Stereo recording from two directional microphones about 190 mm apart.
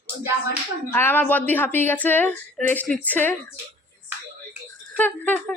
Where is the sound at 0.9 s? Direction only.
10° left (ahead or behind).